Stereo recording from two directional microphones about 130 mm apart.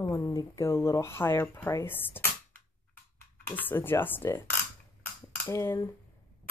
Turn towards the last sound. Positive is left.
turn(degrees=20)  # may be behind; listen again after turning